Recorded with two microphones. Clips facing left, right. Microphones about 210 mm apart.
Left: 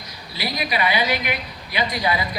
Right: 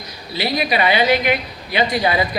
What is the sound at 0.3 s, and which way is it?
Speech, 25° right (ahead or behind).